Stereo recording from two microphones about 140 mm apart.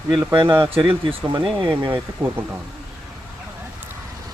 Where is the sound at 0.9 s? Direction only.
40° right (ahead or behind).